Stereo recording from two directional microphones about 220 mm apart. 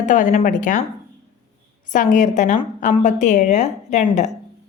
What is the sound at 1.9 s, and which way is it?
A woman's voice, 35° left (ahead or behind).